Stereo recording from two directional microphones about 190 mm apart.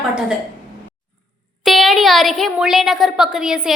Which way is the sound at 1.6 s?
Centre (ahead or behind).